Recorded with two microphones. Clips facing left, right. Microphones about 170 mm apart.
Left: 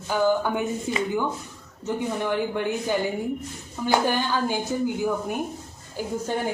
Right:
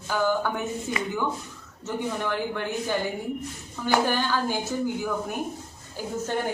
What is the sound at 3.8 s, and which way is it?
Speech, 15° left (ahead or behind).